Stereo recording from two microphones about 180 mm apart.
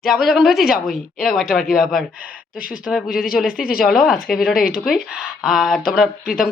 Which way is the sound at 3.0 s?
55° left (ahead or behind).